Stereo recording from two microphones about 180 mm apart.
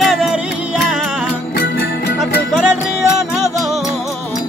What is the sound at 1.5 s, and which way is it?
Music, 65° left (ahead or behind).